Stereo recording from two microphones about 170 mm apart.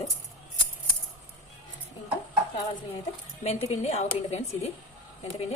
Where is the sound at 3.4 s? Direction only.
40° left (ahead or behind).